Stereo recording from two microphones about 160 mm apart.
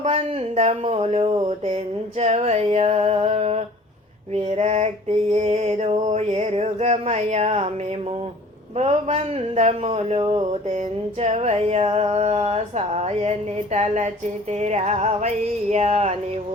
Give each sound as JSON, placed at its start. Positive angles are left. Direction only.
{"t": 0.0, "sound": "mantra", "side_deg": -40}
{"t": 4.4, "sound": "a sound", "side_deg": -40}
{"t": 5.3, "sound": "mantra", "side_deg": -45}
{"t": 8.8, "sound": "mantra", "side_deg": -40}
{"t": 13.7, "sound": "music", "side_deg": -45}
{"t": 15.7, "sound": "mantra", "side_deg": -40}